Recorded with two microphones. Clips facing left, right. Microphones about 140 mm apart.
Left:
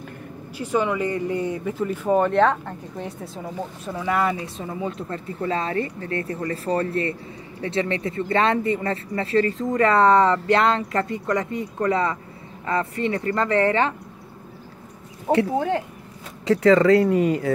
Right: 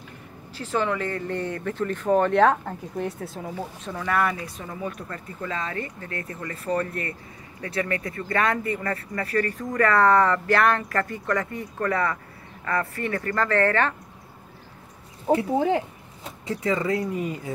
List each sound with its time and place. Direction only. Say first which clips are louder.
0.6 s speech: left 3 dB; 10° left (ahead or behind)
15.3 s speech: left 2 dB; 5° left (ahead or behind)
16.4 s speech: left 10 dB; 80° left